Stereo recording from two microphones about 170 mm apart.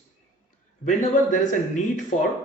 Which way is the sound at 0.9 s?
45° left (ahead or behind).